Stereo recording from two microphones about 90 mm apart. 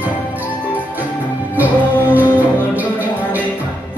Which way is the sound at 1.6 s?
20° right (ahead or behind).